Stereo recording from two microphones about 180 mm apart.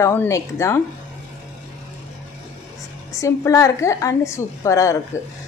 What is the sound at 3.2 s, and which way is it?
A woman's voice, 20° left (ahead or behind).